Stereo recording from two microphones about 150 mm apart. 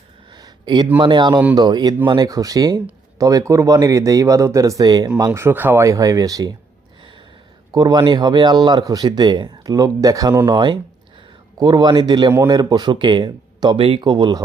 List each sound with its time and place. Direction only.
0.3 s a sound: 30° right (ahead or behind)
0.9 s speech: 30° right (ahead or behind)
7.7 s speech: 25° right (ahead or behind)